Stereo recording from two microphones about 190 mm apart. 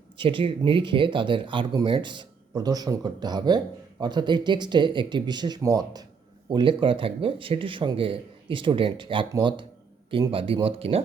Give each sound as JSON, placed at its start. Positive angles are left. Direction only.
{"t": 0.2, "sound": "speech", "side_deg": -25}